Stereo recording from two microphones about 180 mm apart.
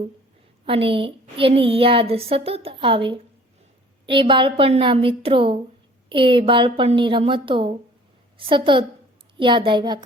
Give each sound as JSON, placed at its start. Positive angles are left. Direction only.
{"t": 0.6, "sound": "a woman's voice", "side_deg": -30}